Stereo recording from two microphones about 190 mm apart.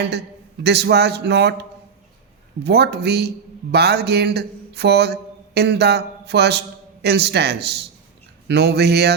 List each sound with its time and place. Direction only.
0.6 s a man's voice: 60° right (ahead or behind)
2.6 s a man's voice: 60° right (ahead or behind)